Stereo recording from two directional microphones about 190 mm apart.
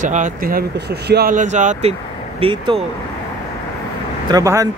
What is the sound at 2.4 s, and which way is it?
Speech, 25° right (ahead or behind).